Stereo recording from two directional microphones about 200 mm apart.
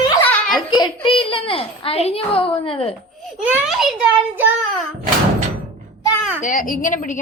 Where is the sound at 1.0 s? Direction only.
25° left (ahead or behind).